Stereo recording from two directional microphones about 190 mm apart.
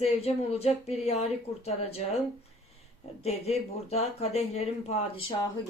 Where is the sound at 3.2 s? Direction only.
35° left (ahead or behind).